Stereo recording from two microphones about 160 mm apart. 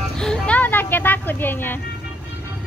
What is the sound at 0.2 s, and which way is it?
Music, 5° left (ahead or behind).